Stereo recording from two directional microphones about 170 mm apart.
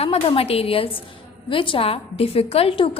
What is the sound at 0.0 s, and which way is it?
A woman's voice, 35° left (ahead or behind).